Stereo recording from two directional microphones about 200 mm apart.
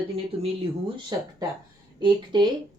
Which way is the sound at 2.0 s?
20° right (ahead or behind).